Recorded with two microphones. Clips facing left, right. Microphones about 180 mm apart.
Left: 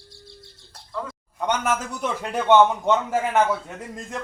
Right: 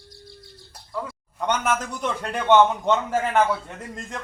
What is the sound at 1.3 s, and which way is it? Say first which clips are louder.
A man's voice: even; 5° left (ahead or behind).